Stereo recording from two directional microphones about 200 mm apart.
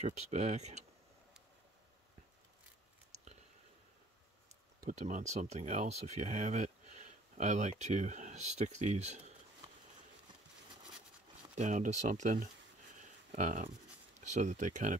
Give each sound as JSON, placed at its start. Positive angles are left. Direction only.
{"t": 0.0, "sound": "speech", "side_deg": -35}
{"t": 4.8, "sound": "speech", "side_deg": -35}
{"t": 11.5, "sound": "speech", "side_deg": -35}
{"t": 13.0, "sound": "a sound", "side_deg": -35}
{"t": 14.2, "sound": "speech", "side_deg": -35}